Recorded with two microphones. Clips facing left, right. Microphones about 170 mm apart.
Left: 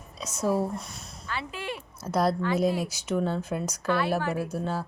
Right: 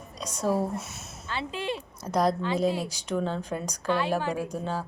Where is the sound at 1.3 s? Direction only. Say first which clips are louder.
Right 3 dB; 25° right (ahead or behind).